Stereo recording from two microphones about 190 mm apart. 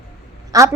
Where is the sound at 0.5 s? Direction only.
15° right (ahead or behind).